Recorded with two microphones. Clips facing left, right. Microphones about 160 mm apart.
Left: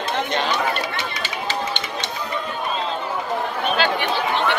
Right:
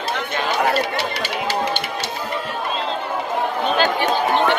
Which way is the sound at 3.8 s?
45° right (ahead or behind).